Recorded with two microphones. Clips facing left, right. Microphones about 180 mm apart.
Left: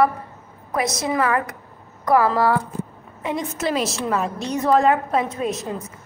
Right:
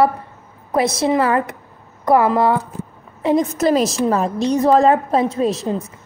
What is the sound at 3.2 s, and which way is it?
A woman's voice, 35° right (ahead or behind).